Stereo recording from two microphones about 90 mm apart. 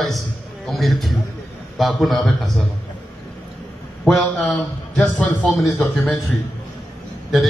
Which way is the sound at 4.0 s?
5° left (ahead or behind).